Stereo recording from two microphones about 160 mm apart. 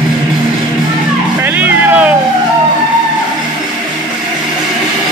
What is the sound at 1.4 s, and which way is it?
Music, 10° right (ahead or behind).